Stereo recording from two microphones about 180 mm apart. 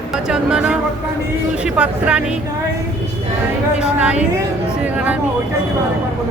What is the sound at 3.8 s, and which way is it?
A woman's voice, 5° right (ahead or behind).